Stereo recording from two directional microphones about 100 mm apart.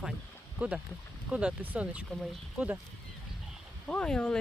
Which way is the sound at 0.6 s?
15° right (ahead or behind).